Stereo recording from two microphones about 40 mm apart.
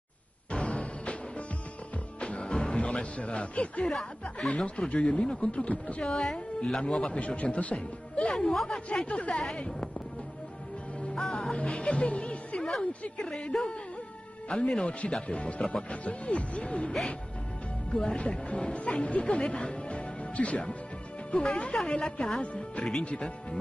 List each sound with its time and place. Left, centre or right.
0.5 s music: left
2.1 s music: left
3.8 s speech: left
6.0 s a woman's voice: centre
6.3 s speech: left
7.2 s speech: left
8.3 s a woman's voice: centre
9.0 s speech: left
11.5 s a woman's voice: left
14.5 s speech: left
17.9 s speech: left
22.4 s speech: left